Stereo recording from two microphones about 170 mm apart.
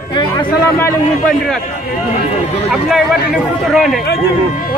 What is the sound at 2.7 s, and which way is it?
Speech, centre (ahead or behind).